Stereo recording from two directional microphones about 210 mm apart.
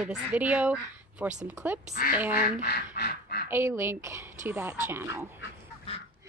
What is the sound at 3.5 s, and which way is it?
Speech, 10° right (ahead or behind).